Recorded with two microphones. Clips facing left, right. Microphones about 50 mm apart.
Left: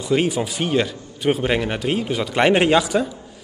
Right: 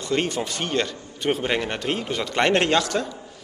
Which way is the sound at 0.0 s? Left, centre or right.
Centre.